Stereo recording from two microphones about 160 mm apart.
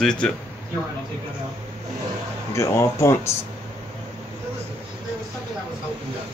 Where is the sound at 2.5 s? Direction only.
20° left (ahead or behind).